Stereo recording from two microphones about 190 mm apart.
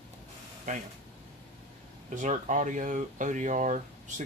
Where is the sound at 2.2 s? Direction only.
40° right (ahead or behind).